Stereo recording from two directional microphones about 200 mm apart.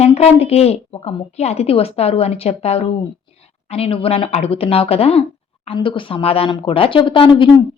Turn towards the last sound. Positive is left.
turn(degrees=25)  # may be behind; listen again after turning